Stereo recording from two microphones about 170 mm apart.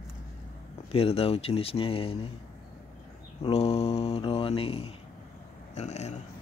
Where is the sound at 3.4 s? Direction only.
35° left (ahead or behind).